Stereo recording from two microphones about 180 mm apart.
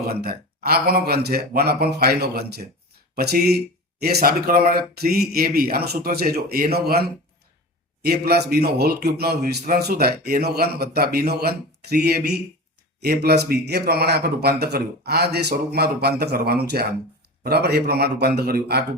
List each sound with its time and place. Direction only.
0.1 s a man's voice: 60° right (ahead or behind)